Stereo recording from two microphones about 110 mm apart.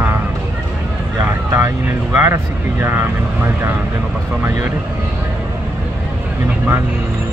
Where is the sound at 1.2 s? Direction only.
20° right (ahead or behind).